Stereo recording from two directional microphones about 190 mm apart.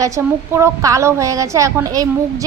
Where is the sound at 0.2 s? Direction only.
15° right (ahead or behind).